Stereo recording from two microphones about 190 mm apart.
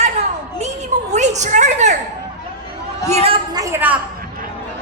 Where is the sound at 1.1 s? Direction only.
35° right (ahead or behind).